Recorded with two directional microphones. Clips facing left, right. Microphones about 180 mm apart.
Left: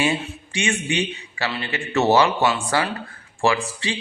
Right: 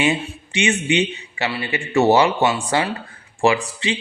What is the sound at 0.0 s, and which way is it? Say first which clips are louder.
Speech: right 2 dB; 20° right (ahead or behind).